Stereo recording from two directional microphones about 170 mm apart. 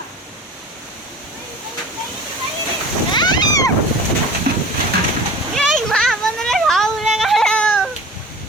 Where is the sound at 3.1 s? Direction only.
25° left (ahead or behind).